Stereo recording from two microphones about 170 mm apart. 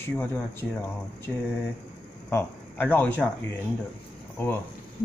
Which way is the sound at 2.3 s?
10° left (ahead or behind).